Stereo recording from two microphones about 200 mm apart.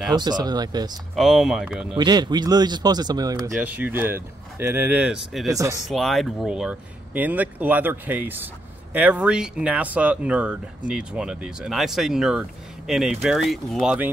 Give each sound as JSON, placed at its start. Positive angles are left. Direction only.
{"t": 0.2, "sound": "speech", "side_deg": -20}
{"t": 1.1, "sound": "speech", "side_deg": 0}
{"t": 2.0, "sound": "speech", "side_deg": -20}
{"t": 5.5, "sound": "speech", "side_deg": -15}
{"t": 5.9, "sound": "speech", "side_deg": 0}